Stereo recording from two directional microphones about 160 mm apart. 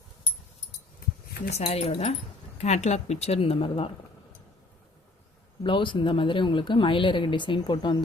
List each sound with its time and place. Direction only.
1.5 s speech: 40° left (ahead or behind)
5.6 s speech: 30° left (ahead or behind)